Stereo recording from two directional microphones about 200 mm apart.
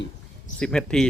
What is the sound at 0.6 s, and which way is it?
Speech, 5° left (ahead or behind).